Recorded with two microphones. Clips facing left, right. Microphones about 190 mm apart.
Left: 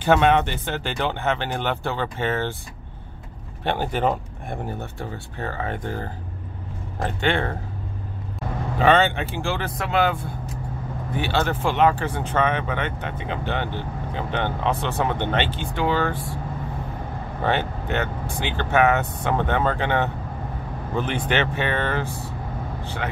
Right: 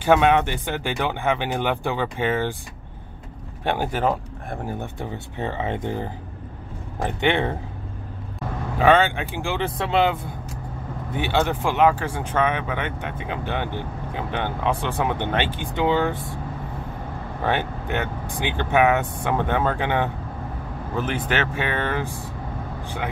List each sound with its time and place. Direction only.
0.0 s speech: 10° right (ahead or behind)
3.6 s speech: 10° right (ahead or behind)
4.7 s speech: 20° right (ahead or behind)
8.7 s speech: 10° right (ahead or behind); by 10.1 s 25° right (ahead or behind)
11.1 s speech: 15° right (ahead or behind)
17.5 s speech: 10° right (ahead or behind)